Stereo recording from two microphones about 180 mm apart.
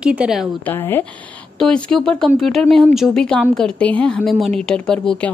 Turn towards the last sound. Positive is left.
turn(degrees=5)  # may be behind; listen again after turning